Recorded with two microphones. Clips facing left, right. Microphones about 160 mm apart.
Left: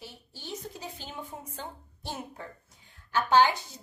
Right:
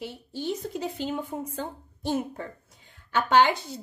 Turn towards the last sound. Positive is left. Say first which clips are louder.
# right 2 dB
turn(degrees=-65)  # may be behind; listen again after turning